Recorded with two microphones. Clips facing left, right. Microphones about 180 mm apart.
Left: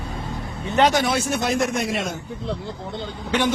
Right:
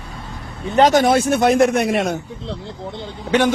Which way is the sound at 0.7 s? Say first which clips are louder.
Right 6 dB; 40° right (ahead or behind).